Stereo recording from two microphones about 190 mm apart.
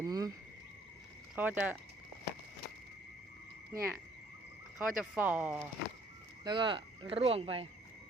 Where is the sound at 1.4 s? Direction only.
10° right (ahead or behind).